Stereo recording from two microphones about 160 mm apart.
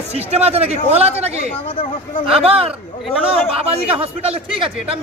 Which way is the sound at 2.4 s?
35° right (ahead or behind).